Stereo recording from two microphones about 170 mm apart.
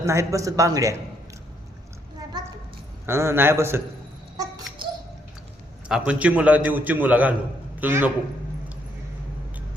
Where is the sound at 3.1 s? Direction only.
15° right (ahead or behind).